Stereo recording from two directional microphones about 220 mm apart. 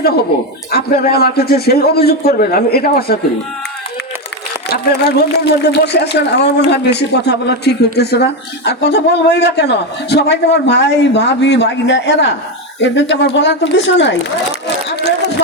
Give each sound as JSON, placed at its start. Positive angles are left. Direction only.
{"t": 0.7, "sound": "speech", "side_deg": 45}
{"t": 4.7, "sound": "speech", "side_deg": 50}